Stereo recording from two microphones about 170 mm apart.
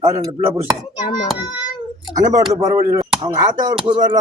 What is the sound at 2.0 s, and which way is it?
Speech, 25° right (ahead or behind).